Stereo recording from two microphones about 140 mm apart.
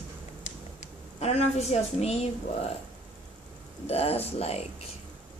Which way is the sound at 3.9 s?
45° left (ahead or behind).